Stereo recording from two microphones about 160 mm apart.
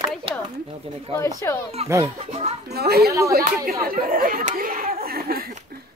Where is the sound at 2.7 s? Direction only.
80° right.